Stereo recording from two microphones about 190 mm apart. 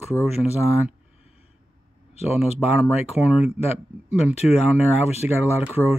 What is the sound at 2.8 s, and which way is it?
Speech, 5° right (ahead or behind).